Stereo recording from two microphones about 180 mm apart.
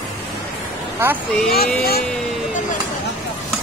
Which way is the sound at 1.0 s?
15° right (ahead or behind).